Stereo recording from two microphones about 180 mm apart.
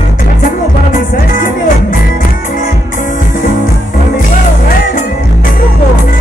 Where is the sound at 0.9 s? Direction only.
50° left (ahead or behind).